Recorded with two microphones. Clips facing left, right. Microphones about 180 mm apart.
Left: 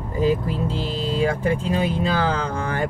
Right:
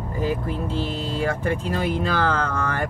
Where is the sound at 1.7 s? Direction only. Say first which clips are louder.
Left 2 dB; 10° left (ahead or behind).